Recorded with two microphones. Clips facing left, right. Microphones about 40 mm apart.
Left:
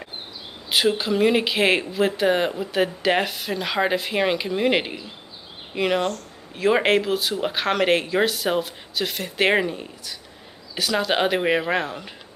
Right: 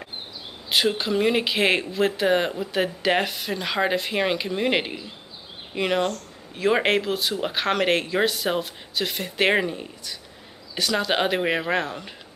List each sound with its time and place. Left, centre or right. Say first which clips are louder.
0.7 s speech: left 2 dB; centre